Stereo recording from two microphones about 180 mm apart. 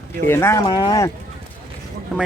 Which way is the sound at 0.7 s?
25° left (ahead or behind).